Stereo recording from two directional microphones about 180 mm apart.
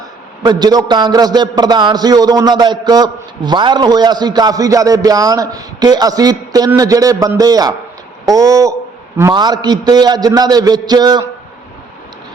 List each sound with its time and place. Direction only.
0.4 s a man's voice: 20° right (ahead or behind)
8.2 s a sound: 20° right (ahead or behind)
9.3 s a man's voice: 25° right (ahead or behind)